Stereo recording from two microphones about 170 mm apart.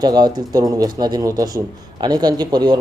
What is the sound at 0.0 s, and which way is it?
Speech, 25° right (ahead or behind).